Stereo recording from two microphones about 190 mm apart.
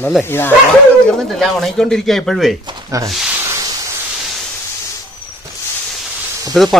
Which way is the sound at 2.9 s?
15° right (ahead or behind).